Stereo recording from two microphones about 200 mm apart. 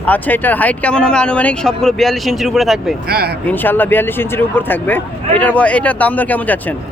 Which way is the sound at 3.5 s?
10° left (ahead or behind).